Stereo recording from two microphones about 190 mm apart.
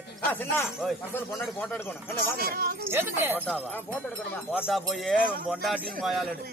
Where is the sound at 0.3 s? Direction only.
10° left (ahead or behind).